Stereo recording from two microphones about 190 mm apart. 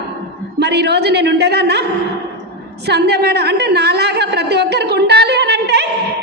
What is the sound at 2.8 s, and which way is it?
A woman's voice, 60° right (ahead or behind).